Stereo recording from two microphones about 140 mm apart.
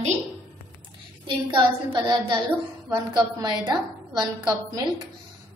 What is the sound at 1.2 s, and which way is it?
A woman's voice, 35° right (ahead or behind).